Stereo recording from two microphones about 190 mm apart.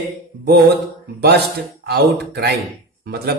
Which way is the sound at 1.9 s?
60° right (ahead or behind).